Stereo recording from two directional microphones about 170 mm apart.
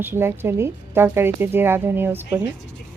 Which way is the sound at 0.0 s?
15° right (ahead or behind).